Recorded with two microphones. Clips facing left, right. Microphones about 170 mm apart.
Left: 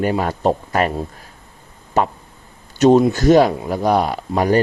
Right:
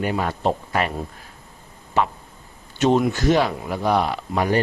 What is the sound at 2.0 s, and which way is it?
Speech, 40° left (ahead or behind).